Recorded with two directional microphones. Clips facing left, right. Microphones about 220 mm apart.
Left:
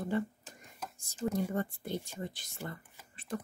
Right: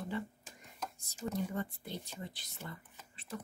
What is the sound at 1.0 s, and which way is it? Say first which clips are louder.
Speech: left 5 dB; 50° left (ahead or behind).